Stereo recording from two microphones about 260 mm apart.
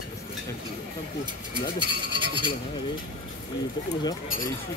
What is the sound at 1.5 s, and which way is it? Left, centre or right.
Speech, centre.